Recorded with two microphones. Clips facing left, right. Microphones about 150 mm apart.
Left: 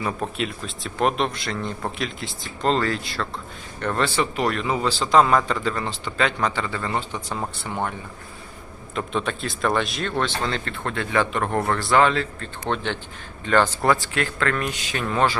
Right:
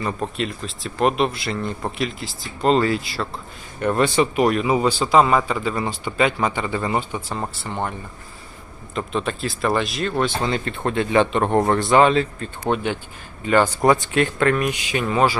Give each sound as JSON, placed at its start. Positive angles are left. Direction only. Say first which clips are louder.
{"t": 0.0, "sound": "speech", "louder": "right 1 dB", "side_deg": 0}
{"t": 3.0, "sound": "speech", "louder": "right 1 dB", "side_deg": 0}
{"t": 7.3, "sound": "speech", "louder": "right 1 dB", "side_deg": 0}
{"t": 9.0, "sound": "speech", "louder": "right 2 dB", "side_deg": 0}